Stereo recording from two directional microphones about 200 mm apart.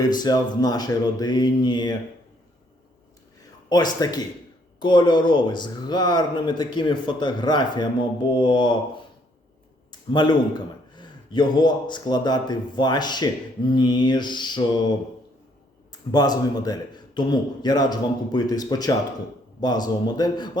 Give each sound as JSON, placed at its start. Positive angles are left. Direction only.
{"t": 0.0, "sound": "a man's voice", "side_deg": 20}
{"t": 4.0, "sound": "a man's voice", "side_deg": 20}
{"t": 9.9, "sound": "a man's voice", "side_deg": 20}
{"t": 15.9, "sound": "a man's voice", "side_deg": 20}